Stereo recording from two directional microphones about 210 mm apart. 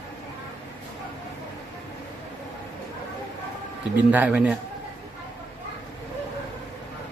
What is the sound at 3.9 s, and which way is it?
Speech, 5° right (ahead or behind).